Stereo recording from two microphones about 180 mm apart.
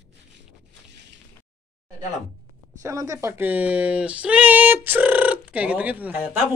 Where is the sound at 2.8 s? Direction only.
15° right (ahead or behind).